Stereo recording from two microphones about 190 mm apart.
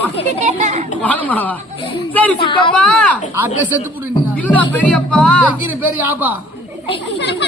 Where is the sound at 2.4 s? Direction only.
25° left (ahead or behind).